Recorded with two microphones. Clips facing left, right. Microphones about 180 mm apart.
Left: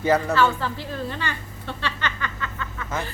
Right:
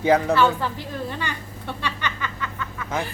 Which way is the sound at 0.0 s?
15° right (ahead or behind).